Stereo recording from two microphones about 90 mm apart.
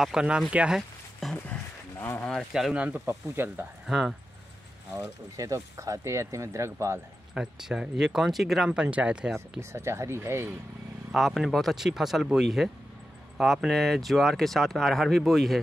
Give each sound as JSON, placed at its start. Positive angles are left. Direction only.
{"t": 0.0, "sound": "speech", "side_deg": -10}
{"t": 0.7, "sound": "a sound", "side_deg": 0}
{"t": 1.5, "sound": "a sound", "side_deg": 25}
{"t": 2.5, "sound": "speech", "side_deg": -10}
{"t": 3.1, "sound": "speech", "side_deg": -25}
{"t": 3.8, "sound": "speech", "side_deg": -5}
{"t": 5.0, "sound": "speech", "side_deg": -40}
{"t": 7.3, "sound": "speech", "side_deg": -10}
{"t": 8.8, "sound": "speech", "side_deg": -15}
{"t": 9.6, "sound": "speech", "side_deg": -30}
{"t": 11.1, "sound": "speech", "side_deg": 0}